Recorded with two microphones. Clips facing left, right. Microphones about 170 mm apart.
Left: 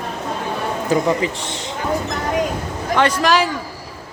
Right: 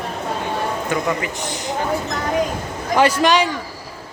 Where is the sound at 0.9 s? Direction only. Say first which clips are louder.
Left 4 dB; 30° left (ahead or behind).